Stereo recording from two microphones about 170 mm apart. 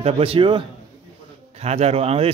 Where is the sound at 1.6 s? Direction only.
40° right (ahead or behind).